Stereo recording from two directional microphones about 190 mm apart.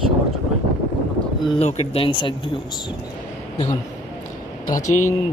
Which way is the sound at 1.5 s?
30° left (ahead or behind).